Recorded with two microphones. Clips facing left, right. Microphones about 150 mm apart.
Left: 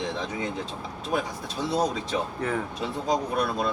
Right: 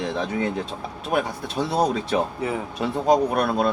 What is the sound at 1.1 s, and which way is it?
Speech, 65° right (ahead or behind).